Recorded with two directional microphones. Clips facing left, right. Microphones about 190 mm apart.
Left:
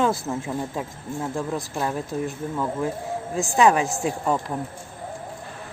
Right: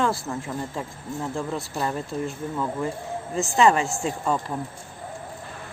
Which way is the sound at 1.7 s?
5° left (ahead or behind).